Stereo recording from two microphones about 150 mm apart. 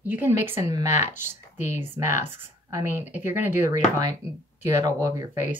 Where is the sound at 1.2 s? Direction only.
50° left (ahead or behind).